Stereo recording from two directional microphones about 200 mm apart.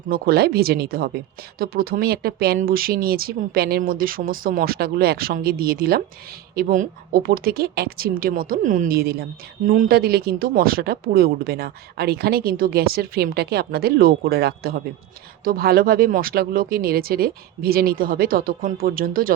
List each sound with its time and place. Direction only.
0.1 s a woman's voice: 50° right (ahead or behind)